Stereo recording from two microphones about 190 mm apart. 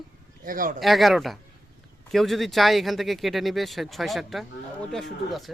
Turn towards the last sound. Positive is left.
turn(degrees=0)  # may be behind; listen again after turning